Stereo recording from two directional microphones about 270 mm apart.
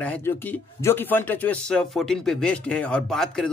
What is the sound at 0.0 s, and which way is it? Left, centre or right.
Speech, centre.